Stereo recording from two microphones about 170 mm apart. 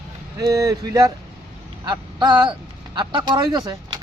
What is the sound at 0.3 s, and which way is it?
Speech, 20° right (ahead or behind).